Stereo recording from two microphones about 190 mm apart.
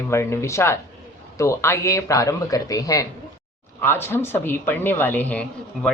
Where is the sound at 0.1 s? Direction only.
15° left (ahead or behind).